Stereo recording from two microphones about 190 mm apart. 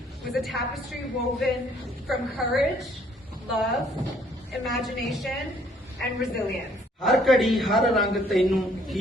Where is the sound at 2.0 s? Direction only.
Centre (ahead or behind).